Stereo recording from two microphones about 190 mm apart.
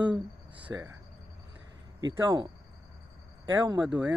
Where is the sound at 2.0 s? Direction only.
20° right (ahead or behind).